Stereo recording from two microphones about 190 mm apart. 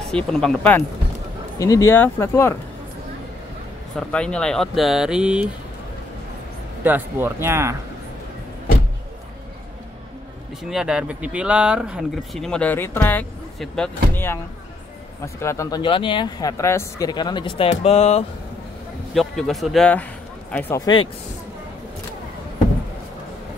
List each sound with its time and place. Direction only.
0.1 s speech: 5° left (ahead or behind)
1.6 s speech: 15° left (ahead or behind)
3.9 s speech: 5° left (ahead or behind)
6.8 s speech: 10° right (ahead or behind)
10.6 s speech: 5° right (ahead or behind); by 18.2 s 35° left (ahead or behind)
19.1 s speech: centre (ahead or behind)